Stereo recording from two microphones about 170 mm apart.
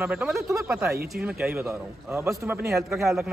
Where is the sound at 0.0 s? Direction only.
5° right (ahead or behind).